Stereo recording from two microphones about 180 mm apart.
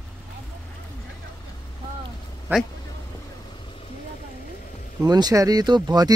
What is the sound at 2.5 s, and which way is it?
Speech, 10° right (ahead or behind).